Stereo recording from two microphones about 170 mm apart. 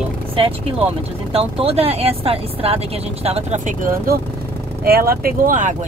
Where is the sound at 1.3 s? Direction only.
35° right (ahead or behind).